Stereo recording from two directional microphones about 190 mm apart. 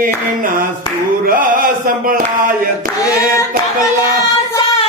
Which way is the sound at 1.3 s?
45° right (ahead or behind).